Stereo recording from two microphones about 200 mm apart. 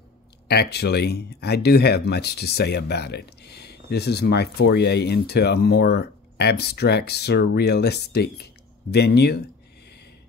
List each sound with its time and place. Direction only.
0.5 s speech: 55° left (ahead or behind)